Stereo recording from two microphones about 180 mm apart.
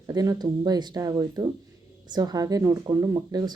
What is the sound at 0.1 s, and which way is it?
Speech, 20° right (ahead or behind).